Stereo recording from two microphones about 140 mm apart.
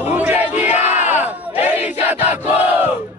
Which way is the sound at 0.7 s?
55° left (ahead or behind).